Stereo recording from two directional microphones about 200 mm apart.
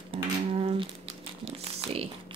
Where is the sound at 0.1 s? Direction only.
30° right (ahead or behind).